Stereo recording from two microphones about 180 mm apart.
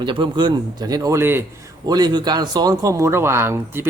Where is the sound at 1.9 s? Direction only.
25° right (ahead or behind).